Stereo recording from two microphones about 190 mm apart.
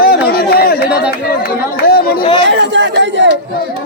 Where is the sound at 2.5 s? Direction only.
70° right (ahead or behind).